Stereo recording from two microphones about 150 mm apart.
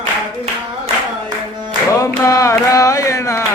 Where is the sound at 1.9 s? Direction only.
20° left (ahead or behind).